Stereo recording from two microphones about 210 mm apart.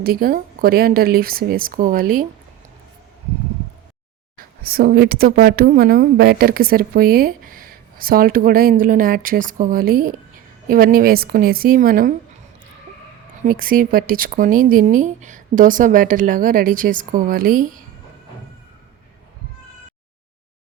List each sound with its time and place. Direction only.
0.0 s a woman's voice: 45° right (ahead or behind)
4.6 s a woman's voice: 45° right (ahead or behind)
13.5 s speech: 40° right (ahead or behind)